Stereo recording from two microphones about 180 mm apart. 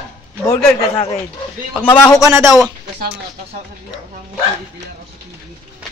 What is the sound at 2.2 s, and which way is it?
Speech, 15° right (ahead or behind).